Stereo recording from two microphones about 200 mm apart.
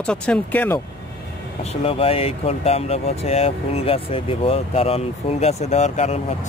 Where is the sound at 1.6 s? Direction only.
30° left (ahead or behind).